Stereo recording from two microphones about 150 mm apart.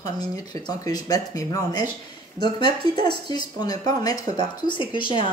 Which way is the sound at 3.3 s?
25° left (ahead or behind).